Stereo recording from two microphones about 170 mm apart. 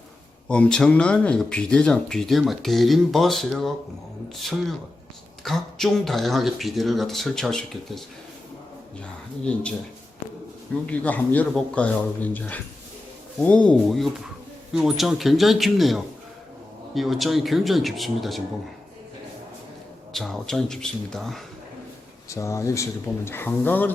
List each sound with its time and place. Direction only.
0.4 s speech: 5° left (ahead or behind)
9.4 s speech: 5° left (ahead or behind)
10.8 s speech: 10° left (ahead or behind)
20.1 s speech: centre (ahead or behind)
22.3 s speech: 15° left (ahead or behind)